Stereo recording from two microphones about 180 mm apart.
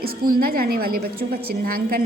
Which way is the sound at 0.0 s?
55° right (ahead or behind).